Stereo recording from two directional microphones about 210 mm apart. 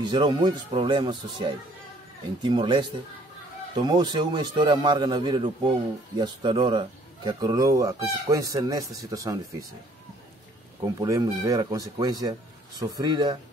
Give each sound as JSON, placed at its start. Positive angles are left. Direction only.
{"t": 0.0, "sound": "a man's voice", "side_deg": -20}
{"t": 11.0, "sound": "a man's voice", "side_deg": -15}